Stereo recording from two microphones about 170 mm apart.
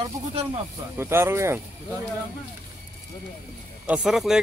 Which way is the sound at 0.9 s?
15° right (ahead or behind).